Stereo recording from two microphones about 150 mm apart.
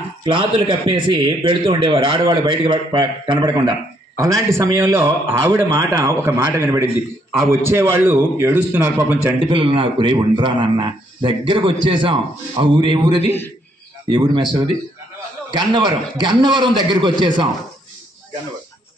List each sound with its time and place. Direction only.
0.2 s a man's voice: 35° right (ahead or behind); by 9.2 s 15° right (ahead or behind)
9.4 s a man's voice: 35° right (ahead or behind)